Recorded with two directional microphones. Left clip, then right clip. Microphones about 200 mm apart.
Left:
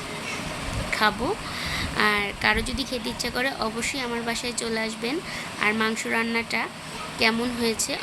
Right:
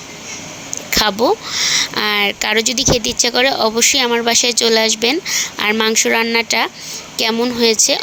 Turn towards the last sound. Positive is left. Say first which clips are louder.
# right 13 dB
turn(degrees=-35)  # may be behind; listen again after turning